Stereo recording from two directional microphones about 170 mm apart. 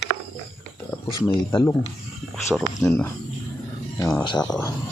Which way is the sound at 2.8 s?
10° left (ahead or behind).